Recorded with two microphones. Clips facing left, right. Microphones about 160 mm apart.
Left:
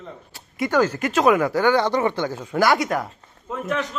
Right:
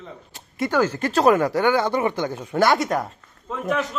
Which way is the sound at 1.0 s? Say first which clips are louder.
Even; 35° right (ahead or behind).